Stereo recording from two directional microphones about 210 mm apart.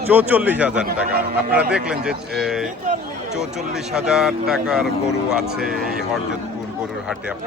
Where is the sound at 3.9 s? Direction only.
5° right (ahead or behind).